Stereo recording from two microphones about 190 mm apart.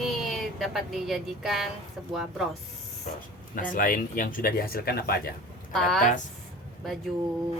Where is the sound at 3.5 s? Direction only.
45° left (ahead or behind).